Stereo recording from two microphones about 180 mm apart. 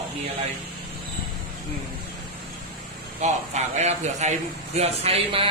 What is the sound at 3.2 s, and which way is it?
Speech, 40° right (ahead or behind).